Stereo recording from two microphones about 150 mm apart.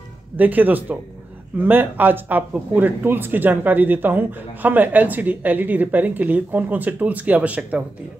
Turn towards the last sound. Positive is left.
turn(degrees=-10)  # may be behind; listen again after turning